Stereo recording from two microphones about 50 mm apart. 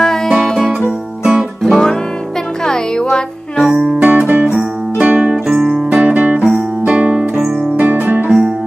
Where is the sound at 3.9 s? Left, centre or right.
Right.